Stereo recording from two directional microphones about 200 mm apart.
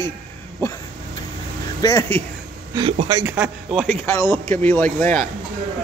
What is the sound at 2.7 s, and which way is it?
Speech, 25° right (ahead or behind).